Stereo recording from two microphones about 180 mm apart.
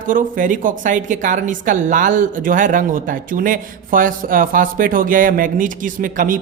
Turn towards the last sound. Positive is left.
turn(degrees=-50)  # may be behind; listen again after turning